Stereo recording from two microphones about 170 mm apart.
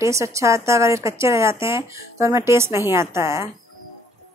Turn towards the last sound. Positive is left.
turn(degrees=-15)  # may be behind; listen again after turning